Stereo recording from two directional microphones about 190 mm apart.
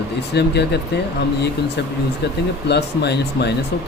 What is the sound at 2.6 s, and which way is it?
Speech, 60° left (ahead or behind).